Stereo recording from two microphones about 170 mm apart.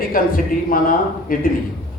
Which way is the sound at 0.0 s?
55° left (ahead or behind).